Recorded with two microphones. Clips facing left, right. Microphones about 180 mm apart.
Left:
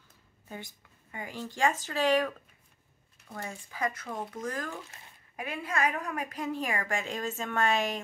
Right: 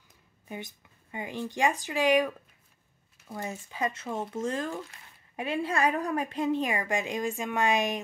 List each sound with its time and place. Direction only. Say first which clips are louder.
0.5 s speech: right 3 dB; 20° right (ahead or behind)
3.3 s a woman's voice: right 3 dB; 20° right (ahead or behind)